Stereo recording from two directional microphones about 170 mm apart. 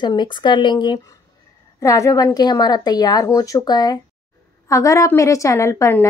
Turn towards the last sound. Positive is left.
turn(degrees=15)  # may be behind; listen again after turning